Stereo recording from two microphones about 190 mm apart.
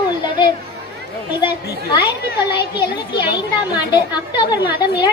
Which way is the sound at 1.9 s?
25° left (ahead or behind).